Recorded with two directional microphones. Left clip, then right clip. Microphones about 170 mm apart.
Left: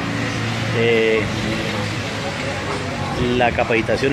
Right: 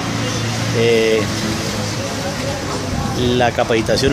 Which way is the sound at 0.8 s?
10° right (ahead or behind).